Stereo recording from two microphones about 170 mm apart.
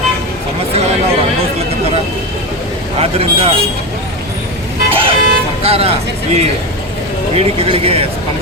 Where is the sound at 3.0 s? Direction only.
35° right (ahead or behind).